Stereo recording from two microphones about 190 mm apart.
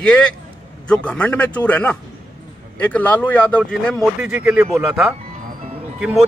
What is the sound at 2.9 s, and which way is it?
A man's voice, 10° left (ahead or behind).